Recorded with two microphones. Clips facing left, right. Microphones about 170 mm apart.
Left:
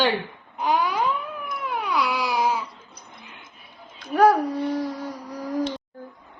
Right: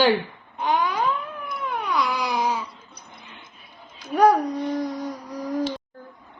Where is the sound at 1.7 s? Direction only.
5° left (ahead or behind).